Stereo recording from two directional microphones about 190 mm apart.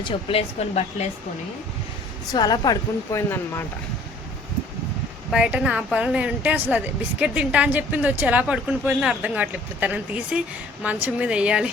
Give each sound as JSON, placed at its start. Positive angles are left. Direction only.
{"t": 0.0, "sound": "speech", "side_deg": 30}
{"t": 2.3, "sound": "speech", "side_deg": 20}
{"t": 5.3, "sound": "a woman's voice", "side_deg": -5}